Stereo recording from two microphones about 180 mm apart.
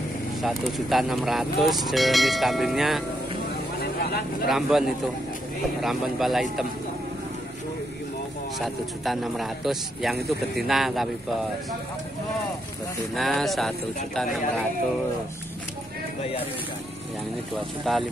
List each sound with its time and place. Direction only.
0.4 s speech: centre (ahead or behind)
3.8 s vehicle: 60° left (ahead or behind)
4.5 s speech: centre (ahead or behind)
8.5 s speech: centre (ahead or behind)
13.1 s speech: centre (ahead or behind)
17.9 s speech: centre (ahead or behind)